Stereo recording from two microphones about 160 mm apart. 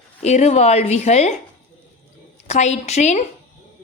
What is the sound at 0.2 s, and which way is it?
A woman's voice, 45° left (ahead or behind).